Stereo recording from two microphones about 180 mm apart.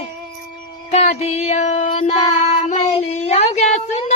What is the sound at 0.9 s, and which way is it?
Child singing, 35° left (ahead or behind).